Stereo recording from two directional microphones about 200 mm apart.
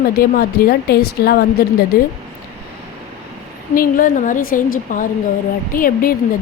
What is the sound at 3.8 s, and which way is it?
A woman's voice, 45° left (ahead or behind).